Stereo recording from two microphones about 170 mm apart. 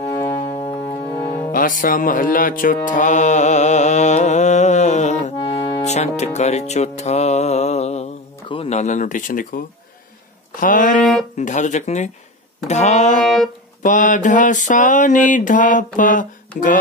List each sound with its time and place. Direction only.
0.0 s music: 15° left (ahead or behind)
1.0 s music: 15° left (ahead or behind)
1.5 s music: 55° left (ahead or behind)
5.6 s music: 15° left (ahead or behind)
5.9 s music: 40° left (ahead or behind)
10.6 s a sound: 50° left (ahead or behind)
11.0 s speech: 5° left (ahead or behind)
11.3 s a sound: 45° left (ahead or behind)
12.6 s speech: 40° left (ahead or behind)
13.2 s music: 5° left (ahead or behind)
13.8 s a sound: 50° left (ahead or behind)